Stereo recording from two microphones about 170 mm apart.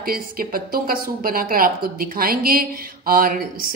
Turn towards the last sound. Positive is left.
turn(degrees=-55)  # may be behind; listen again after turning